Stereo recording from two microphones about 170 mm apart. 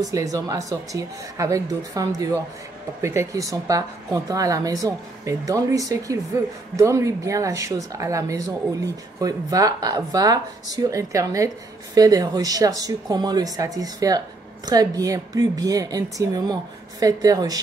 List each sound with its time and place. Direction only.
0.0 s speech: 20° right (ahead or behind)